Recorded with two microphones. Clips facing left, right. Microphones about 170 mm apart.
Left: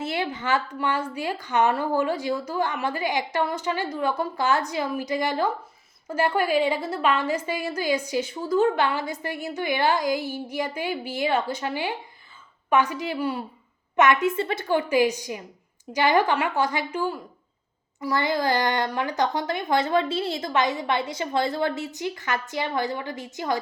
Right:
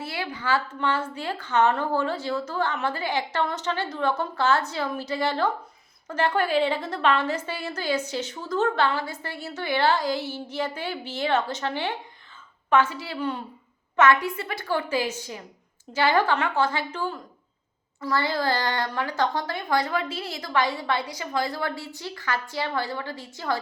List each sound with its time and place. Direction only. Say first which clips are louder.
0.0 s a woman's voice: left 4 dB; 20° left (ahead or behind)